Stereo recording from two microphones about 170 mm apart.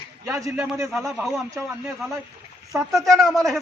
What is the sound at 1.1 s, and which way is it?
Speech, centre (ahead or behind).